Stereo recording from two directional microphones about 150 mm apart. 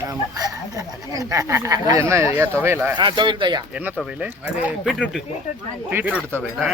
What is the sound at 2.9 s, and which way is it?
Speech, 30° right (ahead or behind).